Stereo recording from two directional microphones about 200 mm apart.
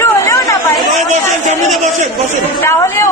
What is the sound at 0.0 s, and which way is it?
Chatter, 15° left (ahead or behind).